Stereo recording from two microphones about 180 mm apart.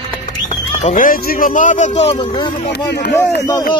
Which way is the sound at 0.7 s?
40° left (ahead or behind).